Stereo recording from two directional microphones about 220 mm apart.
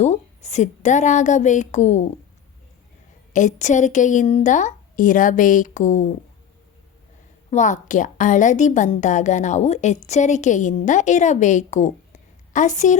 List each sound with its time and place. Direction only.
0.0 s a woman's voice: 30° left (ahead or behind)
3.3 s a woman's voice: 35° left (ahead or behind)
7.5 s a woman's voice: 35° left (ahead or behind)